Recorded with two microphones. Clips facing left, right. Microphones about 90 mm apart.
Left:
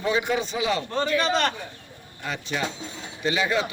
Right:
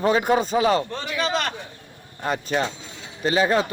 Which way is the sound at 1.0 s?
5° right (ahead or behind).